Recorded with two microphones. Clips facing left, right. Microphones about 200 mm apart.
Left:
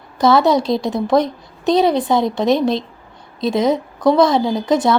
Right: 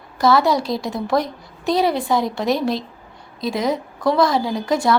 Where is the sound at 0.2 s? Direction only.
20° left (ahead or behind).